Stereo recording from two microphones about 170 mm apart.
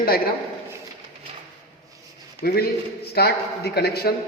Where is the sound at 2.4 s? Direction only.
65° left (ahead or behind).